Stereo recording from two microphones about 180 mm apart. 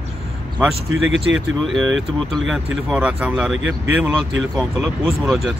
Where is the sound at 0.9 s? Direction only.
90° right.